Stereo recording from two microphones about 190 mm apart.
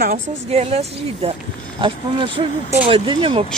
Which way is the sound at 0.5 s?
30° right (ahead or behind).